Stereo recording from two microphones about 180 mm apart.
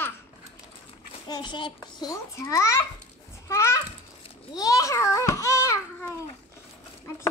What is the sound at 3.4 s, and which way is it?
Children playing, 15° left (ahead or behind).